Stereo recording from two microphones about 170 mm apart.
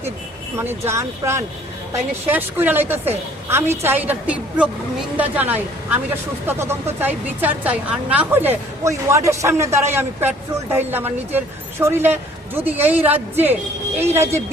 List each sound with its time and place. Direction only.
0.5 s a woman's voice: 15° right (ahead or behind)
7.0 s a woman's voice: 10° right (ahead or behind)